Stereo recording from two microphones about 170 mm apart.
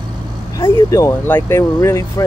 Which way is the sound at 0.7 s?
15° left (ahead or behind).